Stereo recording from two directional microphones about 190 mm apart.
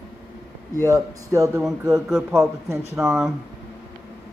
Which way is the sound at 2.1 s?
Centre (ahead or behind).